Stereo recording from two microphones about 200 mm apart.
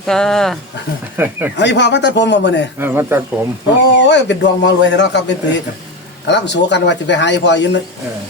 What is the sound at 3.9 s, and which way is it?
Speech, 60° left (ahead or behind).